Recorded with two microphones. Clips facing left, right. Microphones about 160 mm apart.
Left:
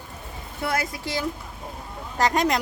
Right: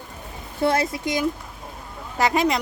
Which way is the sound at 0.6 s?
25° right (ahead or behind).